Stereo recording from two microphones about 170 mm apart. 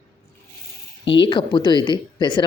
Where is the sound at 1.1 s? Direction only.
30° left (ahead or behind).